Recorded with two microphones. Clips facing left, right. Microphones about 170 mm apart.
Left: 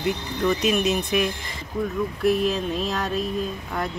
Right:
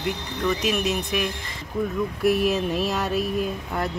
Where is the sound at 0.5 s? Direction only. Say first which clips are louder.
Left 2 dB; centre (ahead or behind).